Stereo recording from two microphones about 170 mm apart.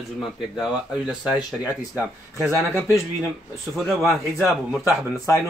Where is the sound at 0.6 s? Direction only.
5° right (ahead or behind).